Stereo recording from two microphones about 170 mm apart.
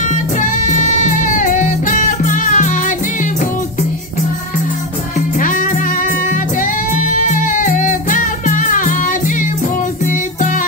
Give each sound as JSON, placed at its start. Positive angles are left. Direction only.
{"t": 0.1, "sound": "music", "side_deg": 50}
{"t": 5.4, "sound": "music", "side_deg": 50}